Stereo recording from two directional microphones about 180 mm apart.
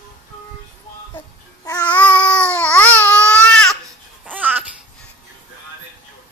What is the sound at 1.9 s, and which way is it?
Babbling, 10° left (ahead or behind).